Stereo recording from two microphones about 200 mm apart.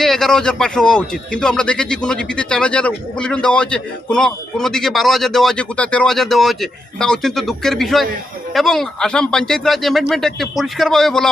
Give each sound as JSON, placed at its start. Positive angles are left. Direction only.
{"t": 0.0, "sound": "speech", "side_deg": 0}